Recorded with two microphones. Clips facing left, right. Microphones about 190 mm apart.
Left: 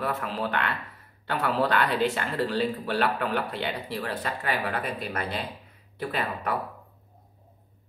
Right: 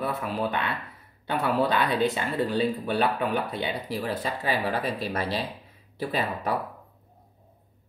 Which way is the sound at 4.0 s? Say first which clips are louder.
Right 2 dB; 25° right (ahead or behind).